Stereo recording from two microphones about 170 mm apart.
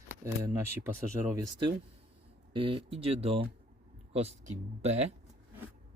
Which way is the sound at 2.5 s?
30° right (ahead or behind).